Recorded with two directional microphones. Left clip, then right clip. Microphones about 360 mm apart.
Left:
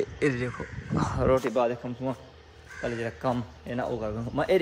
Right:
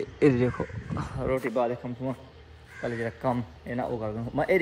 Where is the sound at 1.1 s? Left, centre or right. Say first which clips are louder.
Left 5 dB; left.